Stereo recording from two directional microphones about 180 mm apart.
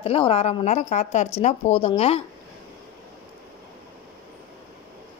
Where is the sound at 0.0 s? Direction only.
30° left (ahead or behind).